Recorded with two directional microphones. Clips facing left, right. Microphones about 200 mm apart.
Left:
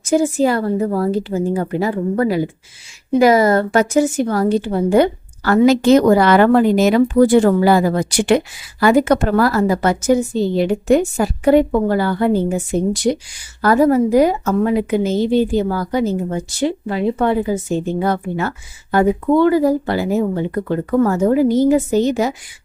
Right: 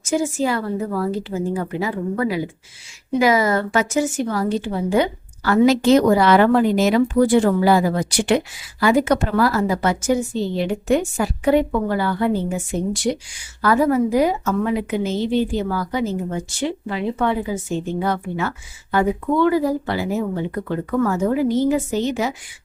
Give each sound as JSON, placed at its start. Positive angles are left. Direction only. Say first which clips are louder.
{"t": 0.2, "sound": "a woman's voice", "louder": "left 5 dB", "side_deg": 40}
{"t": 3.8, "sound": "a woman's voice", "louder": "left 5 dB", "side_deg": 60}